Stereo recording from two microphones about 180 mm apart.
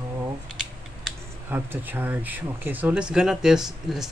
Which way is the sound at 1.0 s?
10° right (ahead or behind).